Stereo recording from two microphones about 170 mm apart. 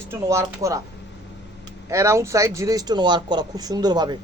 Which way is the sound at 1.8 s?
20° right (ahead or behind).